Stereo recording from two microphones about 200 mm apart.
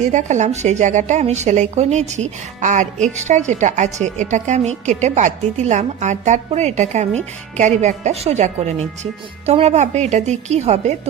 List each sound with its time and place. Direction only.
0.1 s a woman's voice: 35° right (ahead or behind)